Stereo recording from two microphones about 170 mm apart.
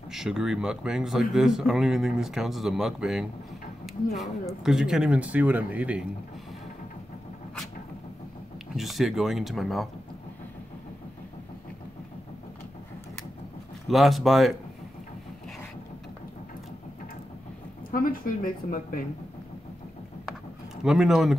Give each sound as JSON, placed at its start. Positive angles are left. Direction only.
{"t": 0.1, "sound": "speech", "side_deg": -5}
{"t": 8.7, "sound": "speech", "side_deg": 0}
{"t": 13.8, "sound": "speech", "side_deg": 0}
{"t": 17.9, "sound": "speech", "side_deg": 55}
{"t": 20.8, "sound": "speech", "side_deg": -5}